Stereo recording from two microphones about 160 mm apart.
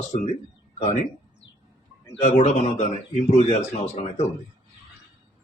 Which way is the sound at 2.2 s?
45° left (ahead or behind).